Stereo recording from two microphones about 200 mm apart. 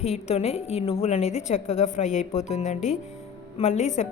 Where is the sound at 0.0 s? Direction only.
35° left (ahead or behind).